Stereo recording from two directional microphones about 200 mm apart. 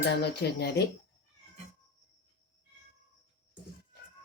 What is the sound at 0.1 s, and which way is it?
Speech, 55° left (ahead or behind).